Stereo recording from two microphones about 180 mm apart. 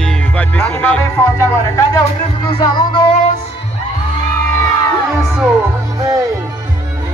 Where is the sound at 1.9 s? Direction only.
25° left (ahead or behind).